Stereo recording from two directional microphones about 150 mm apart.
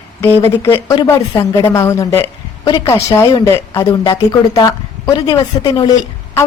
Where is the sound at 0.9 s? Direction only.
30° left (ahead or behind).